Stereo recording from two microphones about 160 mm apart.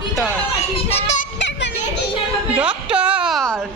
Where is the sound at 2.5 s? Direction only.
5° right (ahead or behind).